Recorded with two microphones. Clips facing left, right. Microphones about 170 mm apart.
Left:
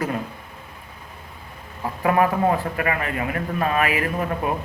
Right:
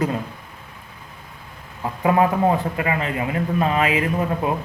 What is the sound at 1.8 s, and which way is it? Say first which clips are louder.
A man's voice: right 1 dB; 20° right (ahead or behind).